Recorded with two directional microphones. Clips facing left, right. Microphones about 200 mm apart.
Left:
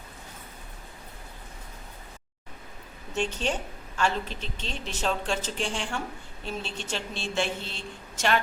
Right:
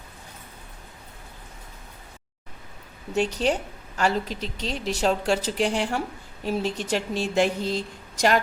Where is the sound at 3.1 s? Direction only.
35° right (ahead or behind).